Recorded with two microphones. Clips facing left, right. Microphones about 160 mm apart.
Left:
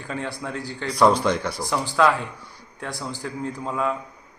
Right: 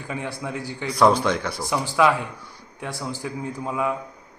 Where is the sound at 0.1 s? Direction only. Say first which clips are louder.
Even; 15° right (ahead or behind).